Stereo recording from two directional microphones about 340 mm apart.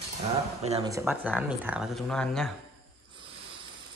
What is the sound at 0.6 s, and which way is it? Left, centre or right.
Speech, centre.